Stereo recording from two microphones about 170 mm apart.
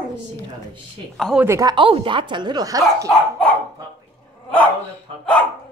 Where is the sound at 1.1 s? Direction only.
Centre (ahead or behind).